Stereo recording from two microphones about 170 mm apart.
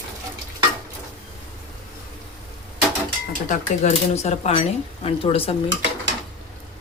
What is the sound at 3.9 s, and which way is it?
Speech, 40° left (ahead or behind).